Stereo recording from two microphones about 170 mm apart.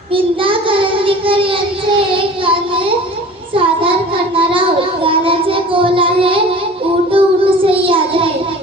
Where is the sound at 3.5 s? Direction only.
30° right (ahead or behind).